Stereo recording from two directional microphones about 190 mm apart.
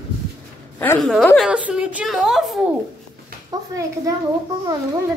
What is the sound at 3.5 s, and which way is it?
Speech, 20° right (ahead or behind).